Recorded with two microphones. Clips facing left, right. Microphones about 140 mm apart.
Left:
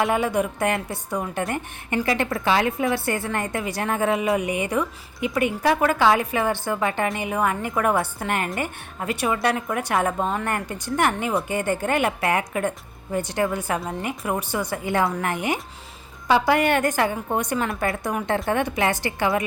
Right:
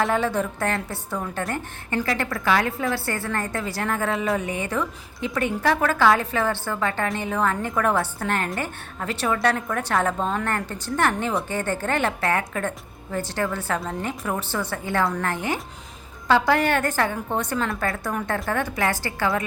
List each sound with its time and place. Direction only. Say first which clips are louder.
0.0 s a woman's voice: left 1 dB; 10° left (ahead or behind)